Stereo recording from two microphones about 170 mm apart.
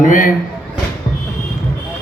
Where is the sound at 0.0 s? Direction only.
50° left (ahead or behind).